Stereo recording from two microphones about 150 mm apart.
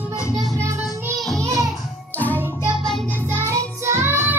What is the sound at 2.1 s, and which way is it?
Music, 10° left (ahead or behind).